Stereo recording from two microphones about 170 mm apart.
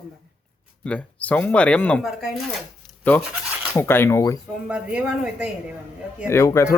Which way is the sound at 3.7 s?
15° left (ahead or behind).